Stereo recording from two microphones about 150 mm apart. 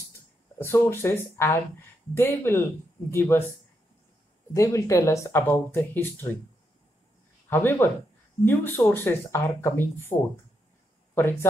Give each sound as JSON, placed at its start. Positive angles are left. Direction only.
{"t": 0.0, "sound": "speech", "side_deg": 15}
{"t": 4.6, "sound": "speech", "side_deg": 20}
{"t": 7.4, "sound": "speech", "side_deg": 15}